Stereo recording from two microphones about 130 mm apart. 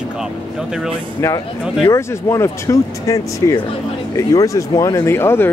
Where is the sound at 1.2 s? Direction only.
25° left (ahead or behind).